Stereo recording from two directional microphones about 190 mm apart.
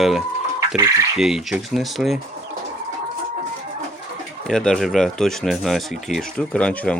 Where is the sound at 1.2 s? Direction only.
Centre (ahead or behind).